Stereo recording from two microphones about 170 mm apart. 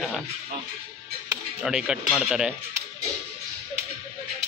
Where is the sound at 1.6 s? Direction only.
5° right (ahead or behind).